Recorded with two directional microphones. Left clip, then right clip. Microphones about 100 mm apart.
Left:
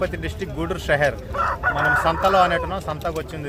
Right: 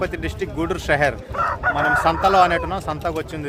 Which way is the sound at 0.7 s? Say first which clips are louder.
Even; 45° right (ahead or behind).